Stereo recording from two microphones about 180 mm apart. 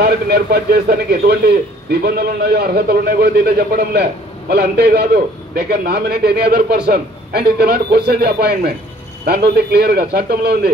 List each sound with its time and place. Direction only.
0.0 s a man's voice: 65° right (ahead or behind)